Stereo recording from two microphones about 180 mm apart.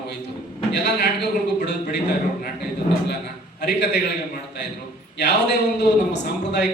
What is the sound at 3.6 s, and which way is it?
Speech, 70° left (ahead or behind).